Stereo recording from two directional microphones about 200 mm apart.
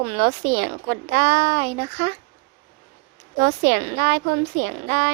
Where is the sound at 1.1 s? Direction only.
40° right (ahead or behind).